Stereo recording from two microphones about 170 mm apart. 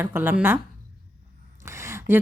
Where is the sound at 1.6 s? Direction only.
15° right (ahead or behind).